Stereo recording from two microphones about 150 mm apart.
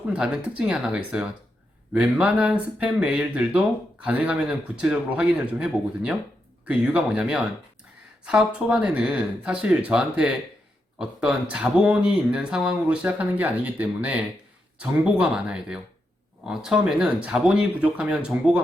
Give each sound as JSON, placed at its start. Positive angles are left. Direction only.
{"t": 0.1, "sound": "speech", "side_deg": -5}